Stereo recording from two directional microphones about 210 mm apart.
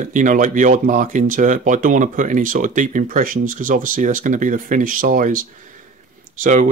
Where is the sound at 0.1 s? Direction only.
40° right (ahead or behind).